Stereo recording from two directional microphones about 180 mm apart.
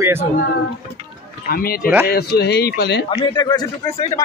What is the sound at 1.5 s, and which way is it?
Speech, 55° left (ahead or behind).